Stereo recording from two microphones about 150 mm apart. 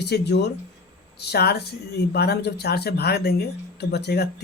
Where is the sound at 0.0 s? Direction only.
90° left.